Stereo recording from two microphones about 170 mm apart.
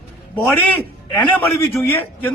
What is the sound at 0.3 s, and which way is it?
Speech, 5° left (ahead or behind).